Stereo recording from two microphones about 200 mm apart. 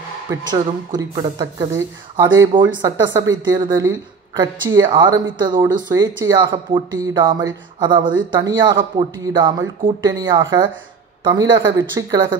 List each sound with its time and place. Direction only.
0.3 s speech: 20° right (ahead or behind)